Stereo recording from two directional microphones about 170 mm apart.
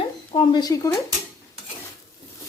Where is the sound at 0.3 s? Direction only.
25° left (ahead or behind).